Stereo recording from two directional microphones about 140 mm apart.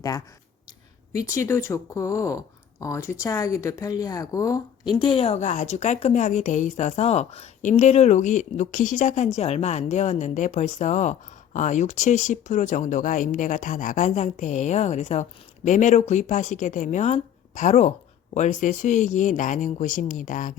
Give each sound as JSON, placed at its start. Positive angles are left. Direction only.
{"t": 1.3, "sound": "speech", "side_deg": 20}